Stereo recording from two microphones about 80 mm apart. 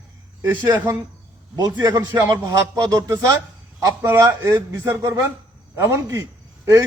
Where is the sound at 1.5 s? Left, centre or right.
Right.